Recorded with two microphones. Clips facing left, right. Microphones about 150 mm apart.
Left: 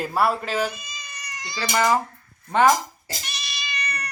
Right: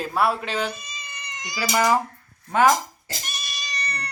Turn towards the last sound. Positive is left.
turn(degrees=-35)  # may be behind; listen again after turning